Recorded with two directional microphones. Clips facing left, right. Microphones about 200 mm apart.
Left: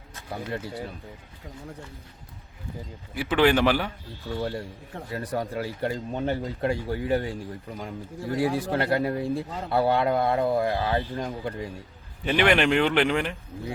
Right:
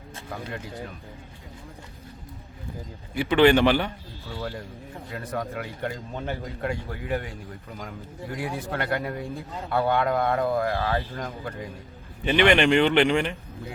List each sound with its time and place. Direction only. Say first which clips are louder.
3.2 s speech: right 3 dB; 5° left (ahead or behind)
4.4 s speech: left 3 dB; 25° left (ahead or behind)
8.4 s speech: left 6 dB; 30° left (ahead or behind)
12.2 s speech: right 2 dB; centre (ahead or behind)